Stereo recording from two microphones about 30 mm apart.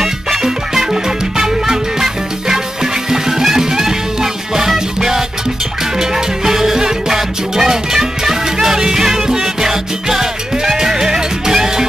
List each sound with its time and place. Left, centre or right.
0.0 s music: centre